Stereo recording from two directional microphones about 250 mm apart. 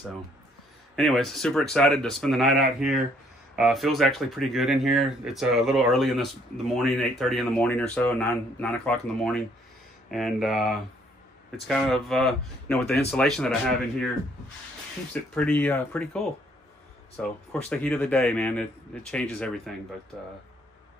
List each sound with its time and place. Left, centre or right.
0.9 s speech: centre
15.3 s speech: centre
17.2 s speech: centre